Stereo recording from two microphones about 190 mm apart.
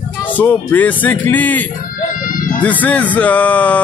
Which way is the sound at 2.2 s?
45° left (ahead or behind).